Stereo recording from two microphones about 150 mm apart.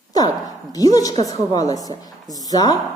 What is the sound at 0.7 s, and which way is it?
A woman's voice, 25° left (ahead or behind).